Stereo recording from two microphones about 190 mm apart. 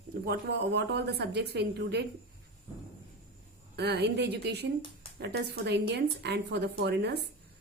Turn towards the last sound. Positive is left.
turn(degrees=-60)  # may be behind; listen again after turning